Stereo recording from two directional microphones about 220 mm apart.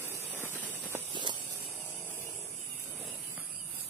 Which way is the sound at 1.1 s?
20° right (ahead or behind).